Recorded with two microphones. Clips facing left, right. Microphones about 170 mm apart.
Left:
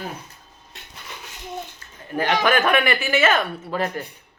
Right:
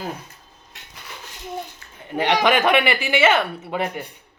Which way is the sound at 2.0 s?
15° right (ahead or behind).